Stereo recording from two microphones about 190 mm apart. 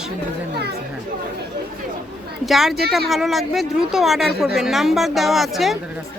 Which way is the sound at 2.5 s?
Centre (ahead or behind).